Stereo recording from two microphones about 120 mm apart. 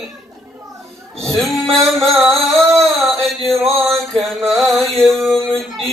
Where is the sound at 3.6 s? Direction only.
Centre (ahead or behind).